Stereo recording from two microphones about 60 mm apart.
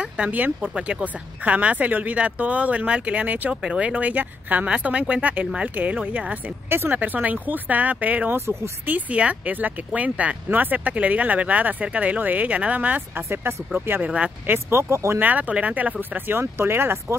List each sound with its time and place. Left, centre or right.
0.0 s a sound: right
0.6 s speech: centre
6.7 s speech: right
13.3 s speech: right
14.0 s speech: centre
14.5 s speech: right
15.1 s speech: right
16.3 s speech: right